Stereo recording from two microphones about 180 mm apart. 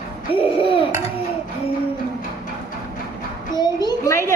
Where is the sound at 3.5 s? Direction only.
25° left (ahead or behind).